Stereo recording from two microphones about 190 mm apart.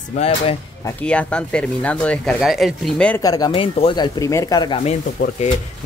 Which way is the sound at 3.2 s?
20° left (ahead or behind).